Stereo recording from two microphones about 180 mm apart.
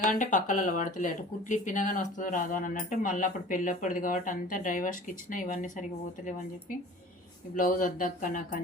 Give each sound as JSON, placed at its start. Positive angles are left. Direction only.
{"t": 0.1, "sound": "speech", "side_deg": 45}
{"t": 7.5, "sound": "speech", "side_deg": 50}